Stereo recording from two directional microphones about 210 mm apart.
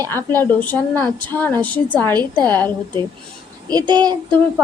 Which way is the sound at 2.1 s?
20° right (ahead or behind).